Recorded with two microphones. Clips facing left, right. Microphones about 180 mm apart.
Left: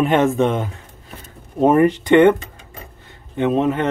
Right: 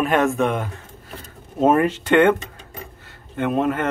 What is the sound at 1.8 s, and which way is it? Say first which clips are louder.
Speech: left 4 dB; 15° left (ahead or behind).